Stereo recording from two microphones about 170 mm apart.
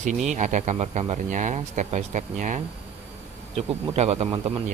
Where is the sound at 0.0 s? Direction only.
45° right (ahead or behind).